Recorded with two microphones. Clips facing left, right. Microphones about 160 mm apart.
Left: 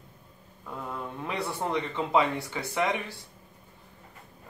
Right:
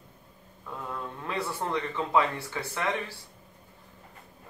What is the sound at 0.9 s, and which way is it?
Speech, 15° left (ahead or behind).